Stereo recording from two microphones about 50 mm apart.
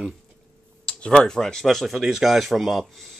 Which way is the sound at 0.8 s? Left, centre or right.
Left.